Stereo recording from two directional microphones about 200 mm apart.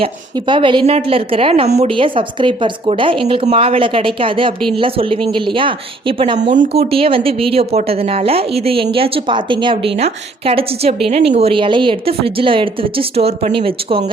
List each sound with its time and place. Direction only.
0.0 s a woman's voice: 25° right (ahead or behind)